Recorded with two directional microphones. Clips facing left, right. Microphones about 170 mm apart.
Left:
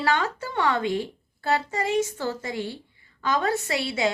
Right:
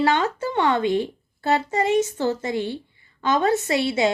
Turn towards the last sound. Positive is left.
turn(degrees=-25)  # may be behind; listen again after turning